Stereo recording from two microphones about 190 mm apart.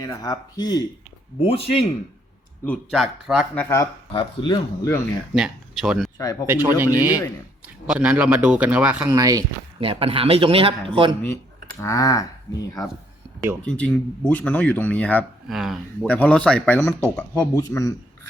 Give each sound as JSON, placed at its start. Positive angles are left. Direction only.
{"t": 0.0, "sound": "speech", "side_deg": 20}
{"t": 1.4, "sound": "speech", "side_deg": 30}
{"t": 2.6, "sound": "speech", "side_deg": 0}
{"t": 4.1, "sound": "speech", "side_deg": 25}
{"t": 5.3, "sound": "speech", "side_deg": -5}
{"t": 6.1, "sound": "speech", "side_deg": 20}
{"t": 6.5, "sound": "a man's voice", "side_deg": -10}
{"t": 9.1, "sound": "a man's voice", "side_deg": -20}
{"t": 9.8, "sound": "a man's voice", "side_deg": -30}
{"t": 11.8, "sound": "speech", "side_deg": 15}
{"t": 13.6, "sound": "speech", "side_deg": 5}